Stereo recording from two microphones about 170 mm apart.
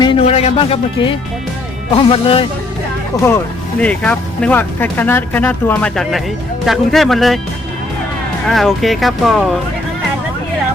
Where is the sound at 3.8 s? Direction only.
5° left (ahead or behind).